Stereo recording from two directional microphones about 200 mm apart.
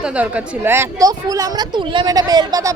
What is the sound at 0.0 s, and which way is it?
Speech, 5° right (ahead or behind).